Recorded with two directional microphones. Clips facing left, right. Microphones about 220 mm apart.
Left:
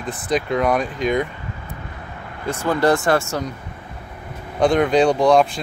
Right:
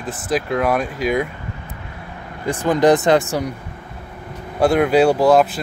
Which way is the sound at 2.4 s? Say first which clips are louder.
Right 3 dB; 15° right (ahead or behind).